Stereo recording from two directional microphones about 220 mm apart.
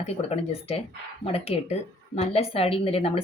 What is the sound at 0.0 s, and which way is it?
A woman's voice, 30° left (ahead or behind).